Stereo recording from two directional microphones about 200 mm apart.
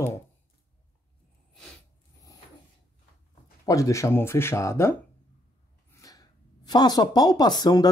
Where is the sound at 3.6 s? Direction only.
15° left (ahead or behind).